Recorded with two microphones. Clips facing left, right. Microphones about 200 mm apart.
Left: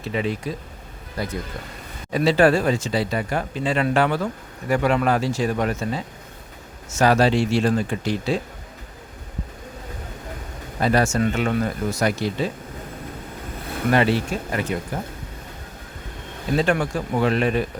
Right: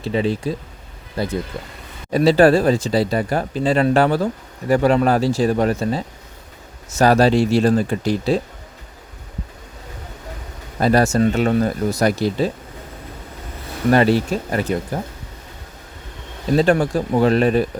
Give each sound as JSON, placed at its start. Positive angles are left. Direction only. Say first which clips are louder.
{"t": 0.0, "sound": "speech", "louder": "right 5 dB", "side_deg": -30}
{"t": 10.8, "sound": "speech", "louder": "right 4 dB", "side_deg": -40}
{"t": 13.9, "sound": "speech", "louder": "right 5 dB", "side_deg": -40}
{"t": 16.6, "sound": "speech", "louder": "right 5 dB", "side_deg": -35}